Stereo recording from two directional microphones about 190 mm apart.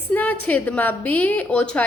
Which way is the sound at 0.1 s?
10° left (ahead or behind).